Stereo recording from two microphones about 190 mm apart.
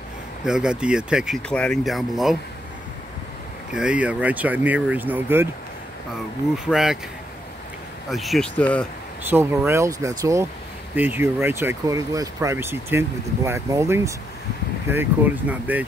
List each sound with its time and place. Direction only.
0.5 s speech: 5° right (ahead or behind)
3.7 s speech: 5° right (ahead or behind)
6.6 s speech: 5° right (ahead or behind)
8.1 s speech: centre (ahead or behind)
9.3 s speech: 10° right (ahead or behind)
15.7 s speech: 10° right (ahead or behind)